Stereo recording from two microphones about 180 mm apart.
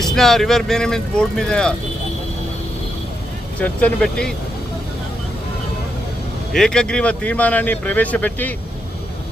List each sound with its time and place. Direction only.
0.0 s speech: centre (ahead or behind)
3.6 s speech: 10° left (ahead or behind)
6.5 s speech: 5° left (ahead or behind)